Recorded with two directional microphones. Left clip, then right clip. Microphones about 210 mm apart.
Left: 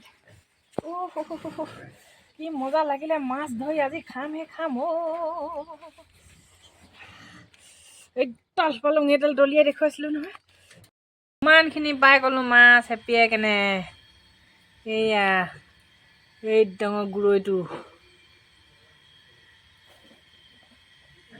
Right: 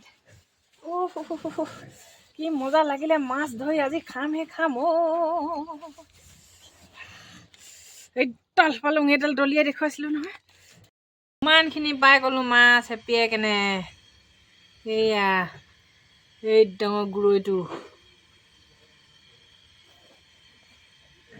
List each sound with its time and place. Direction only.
1.0 s speech: 50° right (ahead or behind)
7.1 s filing: 50° right (ahead or behind)
8.1 s speech: 45° right (ahead or behind)
11.3 s speech: centre (ahead or behind)